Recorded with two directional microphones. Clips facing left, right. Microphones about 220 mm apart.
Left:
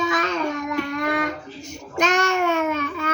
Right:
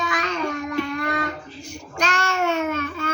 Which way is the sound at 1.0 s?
20° left (ahead or behind).